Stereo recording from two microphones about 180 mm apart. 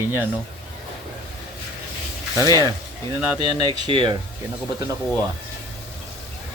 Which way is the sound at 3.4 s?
25° right (ahead or behind).